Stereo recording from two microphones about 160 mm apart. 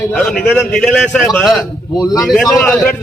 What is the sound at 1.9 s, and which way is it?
Speech, 25° left (ahead or behind).